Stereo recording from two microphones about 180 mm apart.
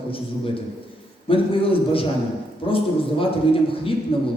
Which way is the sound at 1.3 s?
30° left (ahead or behind).